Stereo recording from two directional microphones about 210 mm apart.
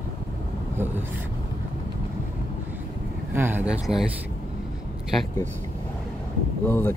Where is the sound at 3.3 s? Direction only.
10° right (ahead or behind).